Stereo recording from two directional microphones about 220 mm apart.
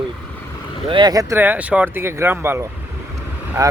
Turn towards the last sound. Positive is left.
turn(degrees=-15)  # may be behind; listen again after turning